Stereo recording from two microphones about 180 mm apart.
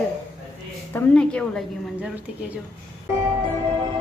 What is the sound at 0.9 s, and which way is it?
Speech, 5° left (ahead or behind).